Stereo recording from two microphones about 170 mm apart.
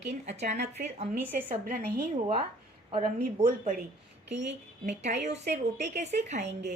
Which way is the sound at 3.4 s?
50° right (ahead or behind).